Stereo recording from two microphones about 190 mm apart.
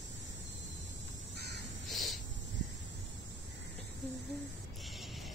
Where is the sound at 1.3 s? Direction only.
60° right (ahead or behind).